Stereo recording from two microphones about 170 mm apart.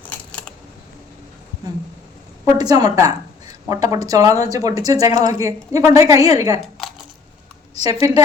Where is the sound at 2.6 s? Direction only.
25° right (ahead or behind).